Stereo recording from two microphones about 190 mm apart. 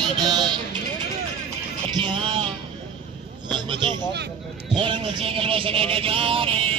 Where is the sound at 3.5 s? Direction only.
25° right (ahead or behind).